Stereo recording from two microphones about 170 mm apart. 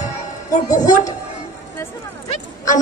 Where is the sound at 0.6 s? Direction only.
20° left (ahead or behind).